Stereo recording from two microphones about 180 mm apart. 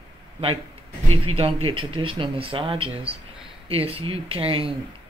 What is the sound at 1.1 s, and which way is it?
Speech, 30° right (ahead or behind).